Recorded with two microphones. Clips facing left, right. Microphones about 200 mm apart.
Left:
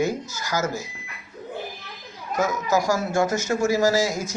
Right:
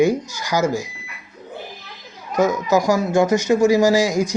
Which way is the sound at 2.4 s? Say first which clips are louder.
Right 6 dB; 15° right (ahead or behind).